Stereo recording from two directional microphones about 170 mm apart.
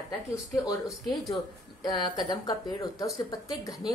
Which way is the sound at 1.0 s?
Centre (ahead or behind).